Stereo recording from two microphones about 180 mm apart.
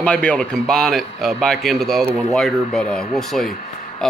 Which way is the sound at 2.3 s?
Centre (ahead or behind).